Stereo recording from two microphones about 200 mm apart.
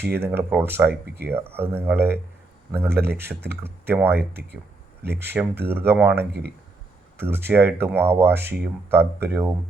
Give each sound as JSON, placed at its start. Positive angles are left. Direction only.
{"t": 0.1, "sound": "speech", "side_deg": -10}
{"t": 0.9, "sound": "speech", "side_deg": -55}
{"t": 1.3, "sound": "speech", "side_deg": -10}